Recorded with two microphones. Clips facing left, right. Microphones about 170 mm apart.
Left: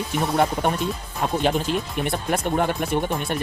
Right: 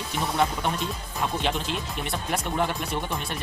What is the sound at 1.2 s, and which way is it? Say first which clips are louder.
Speech: left 6 dB; 45° left (ahead or behind).